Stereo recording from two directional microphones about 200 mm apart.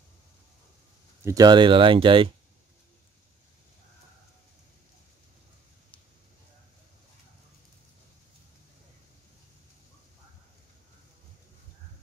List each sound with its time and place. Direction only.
1.2 s speech: 20° right (ahead or behind)